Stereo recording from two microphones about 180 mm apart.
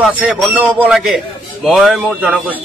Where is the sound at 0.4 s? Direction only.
10° right (ahead or behind).